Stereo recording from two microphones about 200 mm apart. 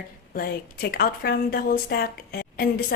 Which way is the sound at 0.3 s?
50° left (ahead or behind).